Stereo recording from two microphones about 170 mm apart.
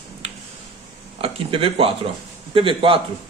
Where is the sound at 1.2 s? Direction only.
35° right (ahead or behind).